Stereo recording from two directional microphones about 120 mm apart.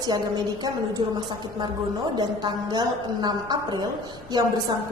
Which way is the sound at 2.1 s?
35° right (ahead or behind).